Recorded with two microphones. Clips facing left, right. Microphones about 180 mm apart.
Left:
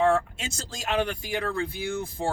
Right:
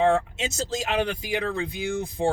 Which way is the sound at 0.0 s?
20° right (ahead or behind).